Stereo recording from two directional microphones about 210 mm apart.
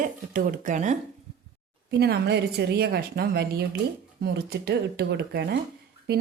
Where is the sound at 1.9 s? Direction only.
50° right (ahead or behind).